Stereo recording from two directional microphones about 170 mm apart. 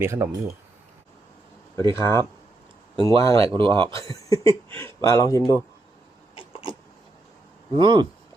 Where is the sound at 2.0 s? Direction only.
25° right (ahead or behind).